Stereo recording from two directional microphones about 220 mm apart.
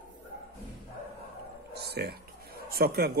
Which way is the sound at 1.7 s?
45° right (ahead or behind).